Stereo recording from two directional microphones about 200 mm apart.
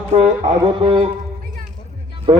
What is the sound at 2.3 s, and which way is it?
Speech, 30° right (ahead or behind).